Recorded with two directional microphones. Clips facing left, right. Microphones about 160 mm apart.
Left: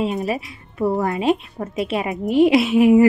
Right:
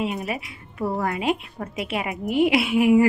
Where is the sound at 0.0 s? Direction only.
25° left (ahead or behind).